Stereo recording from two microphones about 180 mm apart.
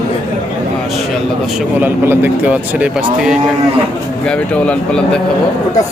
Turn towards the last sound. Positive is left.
turn(degrees=5)  # may be behind; listen again after turning